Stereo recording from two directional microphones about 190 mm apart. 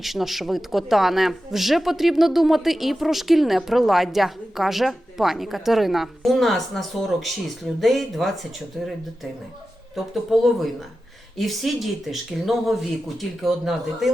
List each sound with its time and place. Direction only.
0.0 s speech: centre (ahead or behind)